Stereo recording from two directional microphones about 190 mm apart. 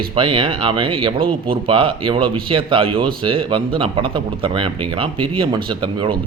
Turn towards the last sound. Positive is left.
turn(degrees=-25)  # may be behind; listen again after turning